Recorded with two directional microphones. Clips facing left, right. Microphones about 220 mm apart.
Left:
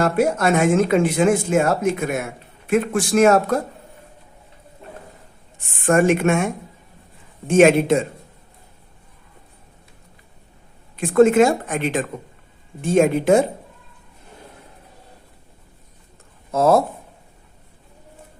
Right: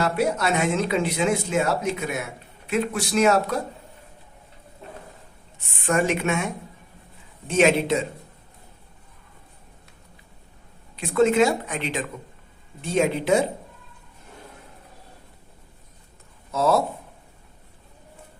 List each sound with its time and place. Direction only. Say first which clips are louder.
0.0 s speech: left 5 dB; 50° left (ahead or behind)
5.5 s speech: left 6 dB; 50° left (ahead or behind)
10.9 s speech: left 6 dB; 50° left (ahead or behind)
16.5 s speech: left 5 dB; 50° left (ahead or behind)